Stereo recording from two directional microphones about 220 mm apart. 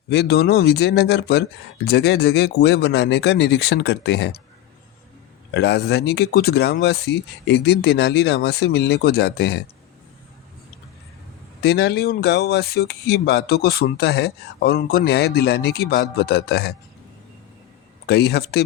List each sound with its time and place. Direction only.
0.1 s speech: 45° left (ahead or behind)
5.5 s speech: 50° left (ahead or behind)
11.6 s speech: 45° left (ahead or behind)
18.0 s speech: 45° left (ahead or behind)